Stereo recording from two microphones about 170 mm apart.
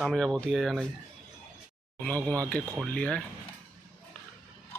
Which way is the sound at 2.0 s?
10° left (ahead or behind).